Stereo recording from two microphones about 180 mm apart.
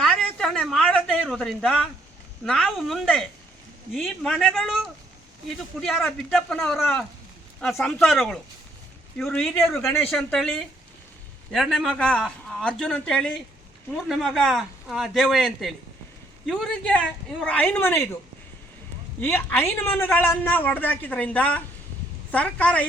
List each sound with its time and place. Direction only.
0.2 s a sound: 5° left (ahead or behind)
2.4 s a man's voice: centre (ahead or behind)
19.2 s a man's voice: 10° left (ahead or behind)